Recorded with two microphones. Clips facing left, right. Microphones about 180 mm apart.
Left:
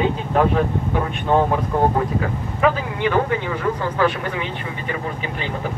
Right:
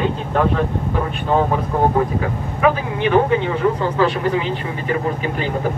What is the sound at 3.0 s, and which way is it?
Speech, 25° right (ahead or behind).